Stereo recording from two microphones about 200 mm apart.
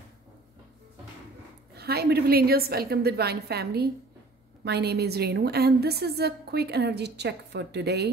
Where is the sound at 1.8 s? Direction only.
50° right (ahead or behind).